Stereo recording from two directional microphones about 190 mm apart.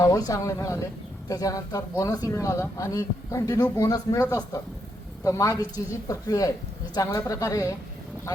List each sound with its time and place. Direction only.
0.0 s speech: 20° left (ahead or behind)